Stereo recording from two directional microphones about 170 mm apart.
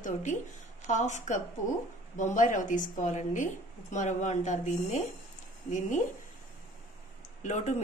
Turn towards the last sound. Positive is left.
turn(degrees=45)  # may be behind; listen again after turning